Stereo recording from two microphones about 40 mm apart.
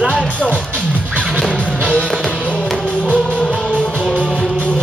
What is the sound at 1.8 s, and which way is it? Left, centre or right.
Music, left.